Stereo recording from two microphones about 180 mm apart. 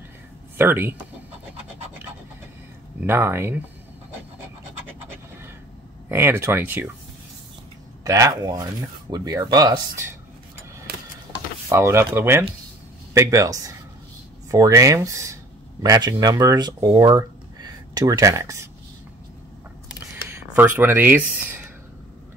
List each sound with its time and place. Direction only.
0.6 s speech: 10° right (ahead or behind)
3.0 s speech: 10° right (ahead or behind)
6.0 s speech: 15° right (ahead or behind)
8.0 s speech: 20° right (ahead or behind)
11.7 s speech: 15° right (ahead or behind)
20.2 s speech: 15° right (ahead or behind)